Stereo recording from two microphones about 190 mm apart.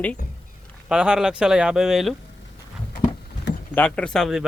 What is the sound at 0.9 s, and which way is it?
Speech, 5° right (ahead or behind).